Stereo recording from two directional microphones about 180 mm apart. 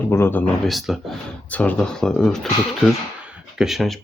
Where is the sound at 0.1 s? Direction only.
10° left (ahead or behind).